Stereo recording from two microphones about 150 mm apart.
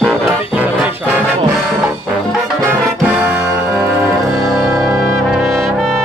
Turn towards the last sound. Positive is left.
turn(degrees=5)  # may be behind; listen again after turning